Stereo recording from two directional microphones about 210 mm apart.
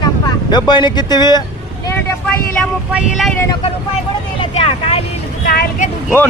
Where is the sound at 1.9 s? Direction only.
5° left (ahead or behind).